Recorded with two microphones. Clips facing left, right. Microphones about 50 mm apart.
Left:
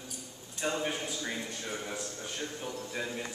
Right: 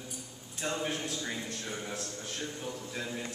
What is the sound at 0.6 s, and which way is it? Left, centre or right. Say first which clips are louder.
A man's voice: left 1 dB; centre.